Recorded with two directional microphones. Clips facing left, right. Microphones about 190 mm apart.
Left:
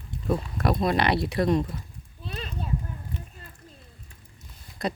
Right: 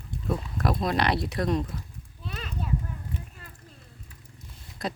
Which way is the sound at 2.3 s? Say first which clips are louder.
Left 1 dB; 25° left (ahead or behind).